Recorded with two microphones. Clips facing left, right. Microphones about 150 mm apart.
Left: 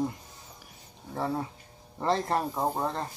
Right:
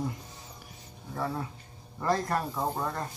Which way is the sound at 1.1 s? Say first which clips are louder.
Left 2 dB; 25° left (ahead or behind).